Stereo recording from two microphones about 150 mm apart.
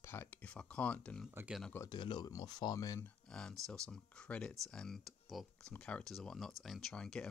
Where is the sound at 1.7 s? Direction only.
25° left (ahead or behind).